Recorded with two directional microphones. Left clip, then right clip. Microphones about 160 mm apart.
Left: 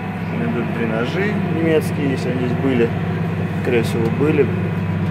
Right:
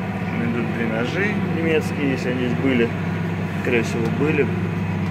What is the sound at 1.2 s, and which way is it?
Speech, 15° left (ahead or behind).